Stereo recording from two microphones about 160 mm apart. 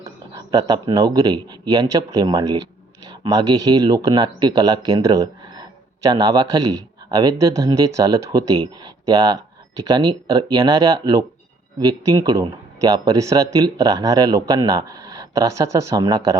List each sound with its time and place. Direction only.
0.0 s speech: 25° right (ahead or behind)